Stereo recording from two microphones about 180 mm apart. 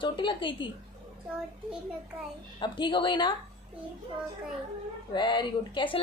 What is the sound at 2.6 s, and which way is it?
Speech, 25° left (ahead or behind).